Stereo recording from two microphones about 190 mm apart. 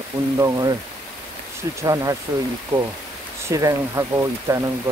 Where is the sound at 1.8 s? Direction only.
20° right (ahead or behind).